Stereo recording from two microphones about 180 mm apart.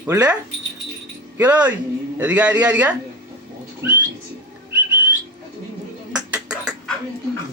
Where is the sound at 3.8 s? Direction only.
10° right (ahead or behind).